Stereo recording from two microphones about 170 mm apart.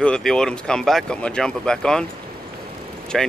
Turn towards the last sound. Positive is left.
turn(degrees=0)  # may be behind; listen again after turning